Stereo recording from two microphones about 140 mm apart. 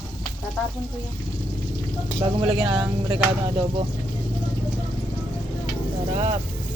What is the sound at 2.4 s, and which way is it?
Speech, 35° right (ahead or behind).